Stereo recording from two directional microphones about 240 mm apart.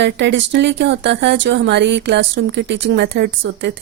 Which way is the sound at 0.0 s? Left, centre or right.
Right.